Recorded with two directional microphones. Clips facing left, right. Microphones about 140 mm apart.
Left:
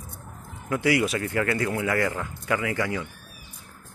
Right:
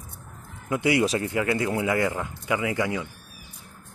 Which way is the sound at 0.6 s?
20° right (ahead or behind).